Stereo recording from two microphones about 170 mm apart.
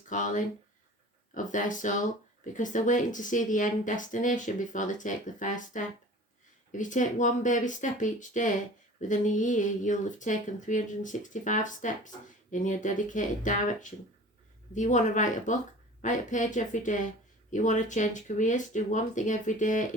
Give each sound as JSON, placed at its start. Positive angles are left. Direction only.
{"t": 0.1, "sound": "speech", "side_deg": 50}
{"t": 14.8, "sound": "speech", "side_deg": 45}